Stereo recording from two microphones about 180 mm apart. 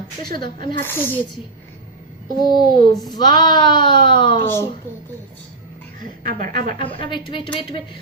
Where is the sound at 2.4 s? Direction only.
25° left (ahead or behind).